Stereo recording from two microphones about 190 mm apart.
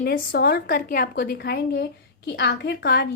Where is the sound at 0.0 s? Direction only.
55° left (ahead or behind).